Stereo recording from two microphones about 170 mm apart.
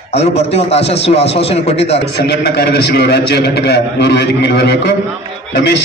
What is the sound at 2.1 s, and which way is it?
A man's voice, 85° left.